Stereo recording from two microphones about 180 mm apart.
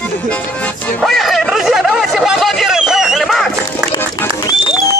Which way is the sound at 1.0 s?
Centre (ahead or behind).